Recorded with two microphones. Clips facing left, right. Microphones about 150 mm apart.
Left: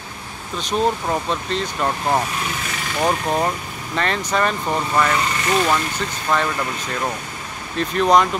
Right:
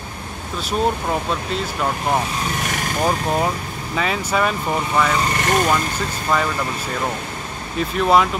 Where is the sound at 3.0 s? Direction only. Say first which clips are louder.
Left 1 dB; 5° right (ahead or behind).